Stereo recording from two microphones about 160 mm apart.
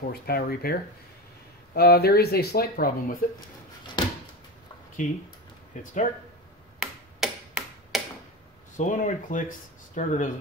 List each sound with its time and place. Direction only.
0.1 s speech: 75° left (ahead or behind)
3.3 s a sound: 30° left (ahead or behind)
5.0 s speech: 55° left (ahead or behind)
6.8 s tick-tock: 5° right (ahead or behind)
8.7 s speech: 50° left (ahead or behind)